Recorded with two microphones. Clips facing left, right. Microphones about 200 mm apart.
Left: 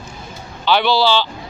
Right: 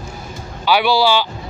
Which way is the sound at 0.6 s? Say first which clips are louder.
Right 1 dB; 10° right (ahead or behind).